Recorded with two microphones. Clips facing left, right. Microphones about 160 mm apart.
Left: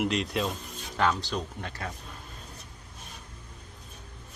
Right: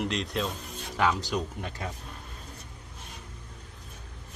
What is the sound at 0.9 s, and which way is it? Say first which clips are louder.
Speech: even; 10° right (ahead or behind).